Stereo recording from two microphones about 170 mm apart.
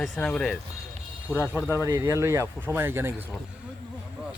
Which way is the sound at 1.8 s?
15° right (ahead or behind).